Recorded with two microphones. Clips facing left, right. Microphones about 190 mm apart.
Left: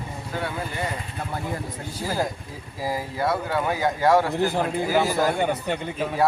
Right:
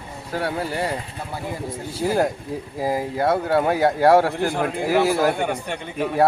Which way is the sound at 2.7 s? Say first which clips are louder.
Right 4 dB; 55° right (ahead or behind).